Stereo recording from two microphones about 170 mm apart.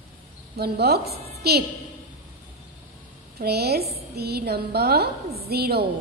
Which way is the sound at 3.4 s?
70° right (ahead or behind).